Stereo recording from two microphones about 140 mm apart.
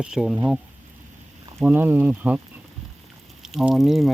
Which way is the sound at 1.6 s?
15° right (ahead or behind).